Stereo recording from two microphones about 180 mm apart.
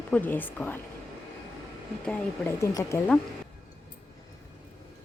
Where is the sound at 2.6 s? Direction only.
20° left (ahead or behind).